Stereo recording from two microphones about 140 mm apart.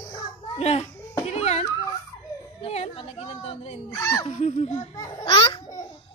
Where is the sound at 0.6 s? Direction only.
50° left (ahead or behind).